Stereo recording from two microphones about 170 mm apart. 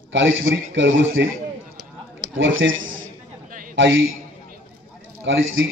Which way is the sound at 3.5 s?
55° right (ahead or behind).